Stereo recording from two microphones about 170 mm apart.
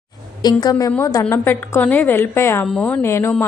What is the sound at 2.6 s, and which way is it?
Speech, 5° left (ahead or behind).